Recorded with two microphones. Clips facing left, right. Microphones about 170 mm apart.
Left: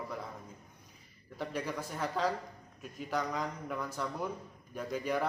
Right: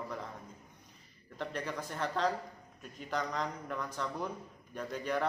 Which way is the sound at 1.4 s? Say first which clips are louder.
Left 1 dB; 10° left (ahead or behind).